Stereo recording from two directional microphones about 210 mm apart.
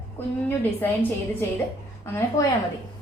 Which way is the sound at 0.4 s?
10° left (ahead or behind).